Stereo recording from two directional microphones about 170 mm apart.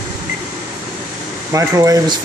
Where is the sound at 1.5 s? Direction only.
20° right (ahead or behind).